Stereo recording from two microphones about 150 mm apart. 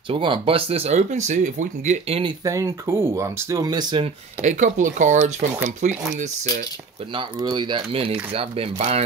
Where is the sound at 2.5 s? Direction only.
20° right (ahead or behind).